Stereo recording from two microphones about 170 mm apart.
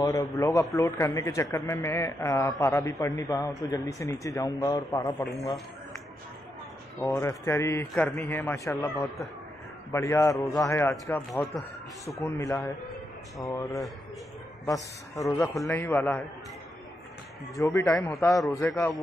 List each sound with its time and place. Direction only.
0.0 s a man's voice: 20° left (ahead or behind)
7.0 s a man's voice: 15° left (ahead or behind)
9.9 s a man's voice: 15° left (ahead or behind)
15.2 s a man's voice: 20° left (ahead or behind)
17.6 s a man's voice: 15° left (ahead or behind)